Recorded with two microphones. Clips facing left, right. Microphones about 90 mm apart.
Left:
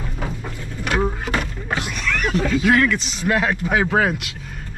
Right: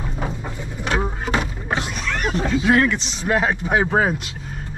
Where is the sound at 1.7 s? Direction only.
25° right (ahead or behind).